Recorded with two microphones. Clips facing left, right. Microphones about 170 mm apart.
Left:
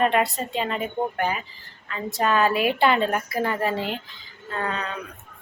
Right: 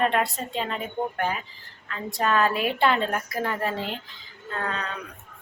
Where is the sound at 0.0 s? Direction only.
5° left (ahead or behind).